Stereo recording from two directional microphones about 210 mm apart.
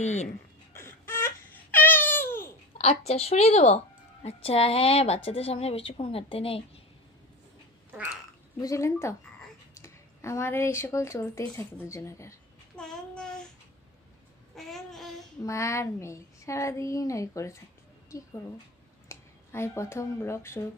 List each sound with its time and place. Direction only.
0.0 s speech: 35° left (ahead or behind)
0.7 s a sound: 10° left (ahead or behind)
2.7 s a woman's voice: 30° left (ahead or behind)
8.5 s speech: 15° left (ahead or behind)
12.7 s child singing: 5° left (ahead or behind)
14.5 s a sound: centre (ahead or behind)
15.4 s speech: 15° left (ahead or behind)
19.0 s speech: 10° left (ahead or behind)